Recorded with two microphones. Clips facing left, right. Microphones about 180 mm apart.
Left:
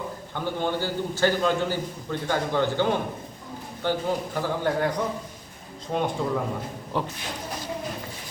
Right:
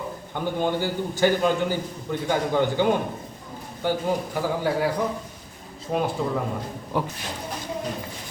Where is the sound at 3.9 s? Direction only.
10° right (ahead or behind).